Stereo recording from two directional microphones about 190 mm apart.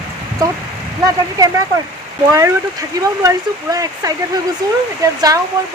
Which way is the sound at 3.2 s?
20° right (ahead or behind).